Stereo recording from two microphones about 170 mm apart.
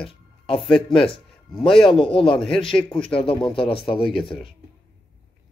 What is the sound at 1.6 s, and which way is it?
Speech, 5° left (ahead or behind).